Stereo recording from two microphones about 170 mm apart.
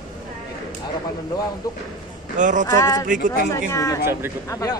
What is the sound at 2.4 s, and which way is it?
Speech, 50° right (ahead or behind).